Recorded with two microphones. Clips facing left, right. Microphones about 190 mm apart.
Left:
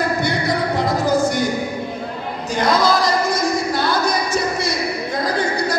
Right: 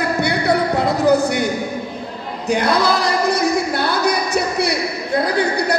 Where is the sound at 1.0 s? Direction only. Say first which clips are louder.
Right 4 dB; 65° right (ahead or behind).